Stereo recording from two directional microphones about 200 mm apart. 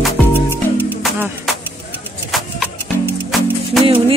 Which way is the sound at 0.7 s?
5° right (ahead or behind).